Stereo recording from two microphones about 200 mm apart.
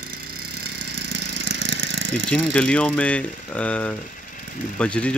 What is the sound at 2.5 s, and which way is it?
Speech, 5° left (ahead or behind).